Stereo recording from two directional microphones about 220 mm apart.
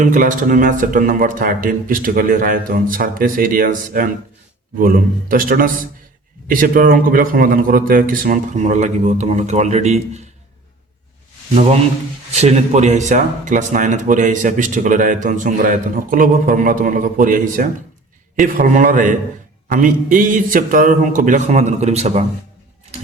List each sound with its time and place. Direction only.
0.0 s speech: 35° right (ahead or behind)
12.3 s speech: 30° right (ahead or behind)